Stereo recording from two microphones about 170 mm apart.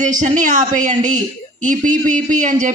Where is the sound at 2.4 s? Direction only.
50° right (ahead or behind).